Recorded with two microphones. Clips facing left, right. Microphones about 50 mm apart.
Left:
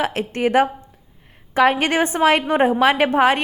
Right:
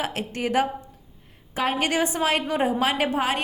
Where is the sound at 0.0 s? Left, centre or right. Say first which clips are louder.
Left 7 dB; left.